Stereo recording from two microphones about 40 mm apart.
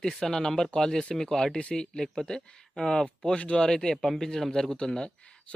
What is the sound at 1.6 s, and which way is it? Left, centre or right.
Speech, left.